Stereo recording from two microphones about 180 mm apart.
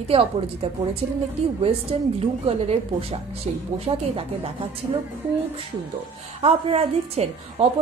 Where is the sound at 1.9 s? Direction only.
35° right (ahead or behind).